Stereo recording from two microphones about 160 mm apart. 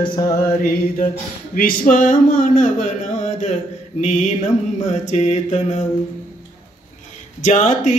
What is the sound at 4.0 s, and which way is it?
Mantra, 45° left (ahead or behind).